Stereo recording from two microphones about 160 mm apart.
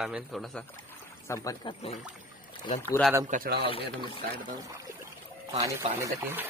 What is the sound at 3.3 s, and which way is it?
Speech, 70° right (ahead or behind).